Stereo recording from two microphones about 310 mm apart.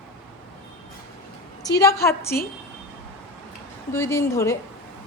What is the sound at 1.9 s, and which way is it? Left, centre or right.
Speech, centre.